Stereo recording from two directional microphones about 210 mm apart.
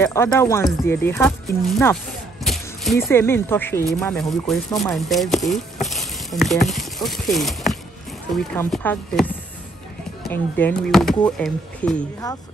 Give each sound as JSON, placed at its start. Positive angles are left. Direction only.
{"t": 0.0, "sound": "speech", "side_deg": 10}
{"t": 2.4, "sound": "a sound", "side_deg": 0}
{"t": 3.1, "sound": "speech", "side_deg": 10}
{"t": 10.3, "sound": "speech", "side_deg": 5}